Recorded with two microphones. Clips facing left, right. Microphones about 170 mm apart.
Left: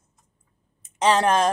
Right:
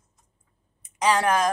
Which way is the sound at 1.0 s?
25° left (ahead or behind).